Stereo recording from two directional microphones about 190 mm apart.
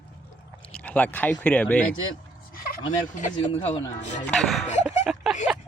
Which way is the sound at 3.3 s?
30° left (ahead or behind).